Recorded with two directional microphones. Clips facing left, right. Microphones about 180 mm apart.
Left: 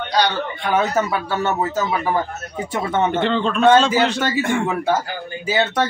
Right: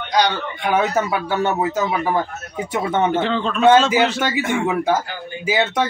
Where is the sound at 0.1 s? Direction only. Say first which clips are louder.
Right 1 dB; 15° right (ahead or behind).